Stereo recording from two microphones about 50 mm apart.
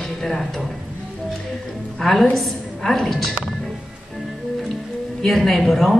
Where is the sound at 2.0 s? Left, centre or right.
Centre.